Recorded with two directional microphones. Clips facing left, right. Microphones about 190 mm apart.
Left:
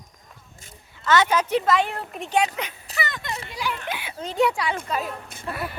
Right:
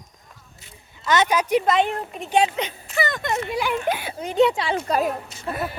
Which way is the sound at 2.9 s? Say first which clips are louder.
Right 7 dB; 40° right (ahead or behind).